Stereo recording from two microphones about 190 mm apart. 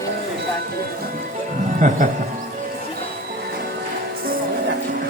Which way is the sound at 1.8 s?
40° right (ahead or behind).